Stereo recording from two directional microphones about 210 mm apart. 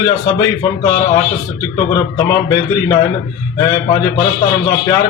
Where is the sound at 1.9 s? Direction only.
15° left (ahead or behind).